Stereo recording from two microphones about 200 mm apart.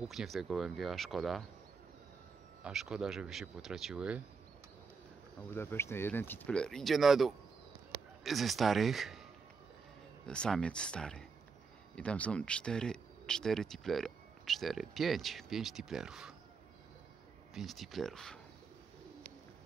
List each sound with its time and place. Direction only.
0.0 s speech: centre (ahead or behind)
2.6 s speech: 5° right (ahead or behind)
5.5 s speech: 10° left (ahead or behind)
10.2 s speech: 5° left (ahead or behind)
17.6 s speech: centre (ahead or behind)